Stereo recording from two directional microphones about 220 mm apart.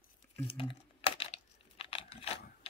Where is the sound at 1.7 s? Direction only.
25° left (ahead or behind).